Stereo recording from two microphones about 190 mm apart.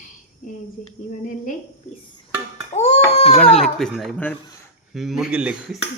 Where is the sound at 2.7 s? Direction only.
35° left (ahead or behind).